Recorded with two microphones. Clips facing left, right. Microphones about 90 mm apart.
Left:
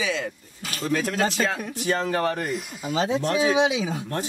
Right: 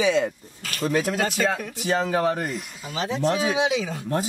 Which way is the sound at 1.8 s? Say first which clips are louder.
Right 1 dB; 5° right (ahead or behind).